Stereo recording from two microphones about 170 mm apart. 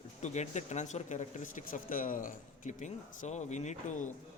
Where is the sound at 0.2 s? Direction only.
45° left (ahead or behind).